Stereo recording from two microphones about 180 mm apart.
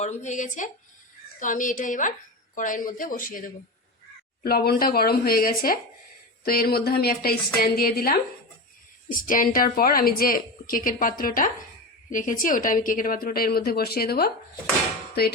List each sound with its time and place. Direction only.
0.0 s a woman's voice: 40° left (ahead or behind); by 14.3 s 60° left (ahead or behind)